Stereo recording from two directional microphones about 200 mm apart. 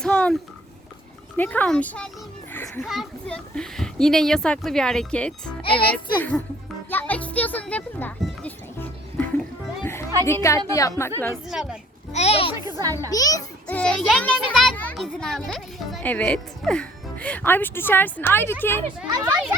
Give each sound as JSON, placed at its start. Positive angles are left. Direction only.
{"t": 0.0, "sound": "a sound", "side_deg": 5}
{"t": 1.4, "sound": "a child's voice", "side_deg": 10}
{"t": 2.5, "sound": "children playing", "side_deg": 10}
{"t": 2.8, "sound": "a child's voice", "side_deg": 0}
{"t": 6.9, "sound": "music", "side_deg": 10}
{"t": 10.7, "sound": "a child's voice", "side_deg": 15}
{"t": 11.4, "sound": "a child's voice", "side_deg": -5}
{"t": 12.1, "sound": "a child's voice", "side_deg": 30}
{"t": 12.8, "sound": "speech", "side_deg": -15}
{"t": 13.1, "sound": "a child's voice", "side_deg": 20}
{"t": 13.7, "sound": "a child's voice", "side_deg": 5}
{"t": 18.9, "sound": "speech", "side_deg": -10}